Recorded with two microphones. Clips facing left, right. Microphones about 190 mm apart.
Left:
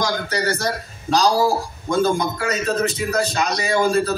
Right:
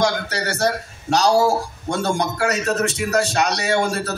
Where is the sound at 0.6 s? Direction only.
70° right (ahead or behind).